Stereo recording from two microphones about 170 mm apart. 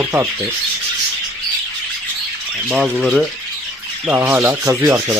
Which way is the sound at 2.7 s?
Centre (ahead or behind).